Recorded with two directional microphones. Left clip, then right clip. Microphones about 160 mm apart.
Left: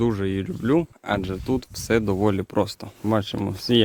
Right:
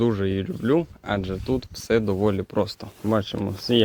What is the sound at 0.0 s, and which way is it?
Speech, 35° left (ahead or behind).